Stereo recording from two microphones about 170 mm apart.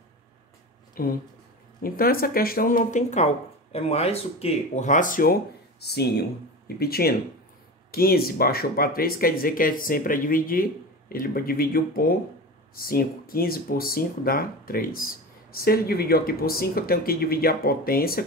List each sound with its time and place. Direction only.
1.0 s speech: 60° left (ahead or behind)